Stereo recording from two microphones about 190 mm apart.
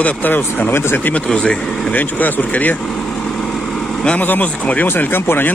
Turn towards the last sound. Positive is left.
turn(degrees=10)  # may be behind; listen again after turning